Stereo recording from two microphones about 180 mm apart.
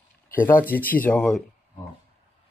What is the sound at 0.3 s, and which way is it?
Speech, 10° left (ahead or behind).